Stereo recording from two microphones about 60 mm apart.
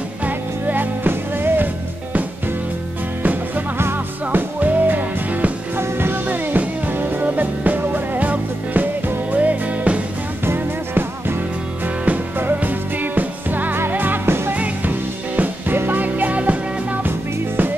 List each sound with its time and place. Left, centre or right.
0.2 s music: right
3.2 s music: right
5.8 s music: right
10.4 s music: right
14.5 s music: right